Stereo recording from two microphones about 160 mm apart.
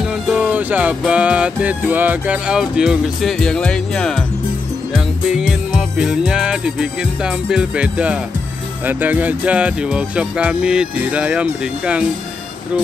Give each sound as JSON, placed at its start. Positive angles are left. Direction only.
{"t": 0.0, "sound": "music", "side_deg": -5}
{"t": 8.8, "sound": "speech", "side_deg": -10}